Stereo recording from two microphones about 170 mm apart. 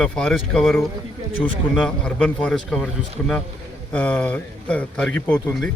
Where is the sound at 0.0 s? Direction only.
5° left (ahead or behind).